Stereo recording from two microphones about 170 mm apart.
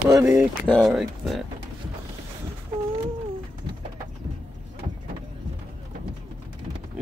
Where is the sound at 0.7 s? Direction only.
5° left (ahead or behind).